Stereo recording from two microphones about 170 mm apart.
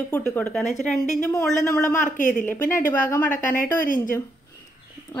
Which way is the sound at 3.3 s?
50° left (ahead or behind).